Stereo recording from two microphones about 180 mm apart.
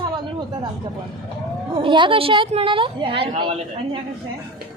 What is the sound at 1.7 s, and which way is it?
A woman's voice, 25° right (ahead or behind).